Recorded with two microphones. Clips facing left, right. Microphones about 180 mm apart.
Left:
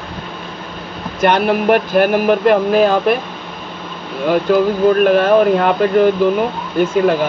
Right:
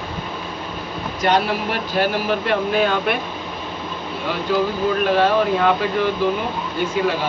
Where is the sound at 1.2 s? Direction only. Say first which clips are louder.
Left 6 dB; 55° left (ahead or behind); by 3.2 s 40° left (ahead or behind).